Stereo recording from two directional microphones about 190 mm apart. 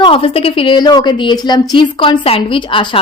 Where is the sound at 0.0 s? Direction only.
30° left (ahead or behind).